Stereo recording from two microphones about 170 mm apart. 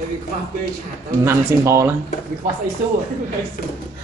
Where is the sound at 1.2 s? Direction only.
15° right (ahead or behind).